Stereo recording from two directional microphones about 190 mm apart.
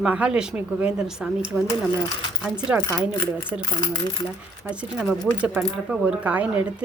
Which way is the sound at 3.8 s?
20° left (ahead or behind).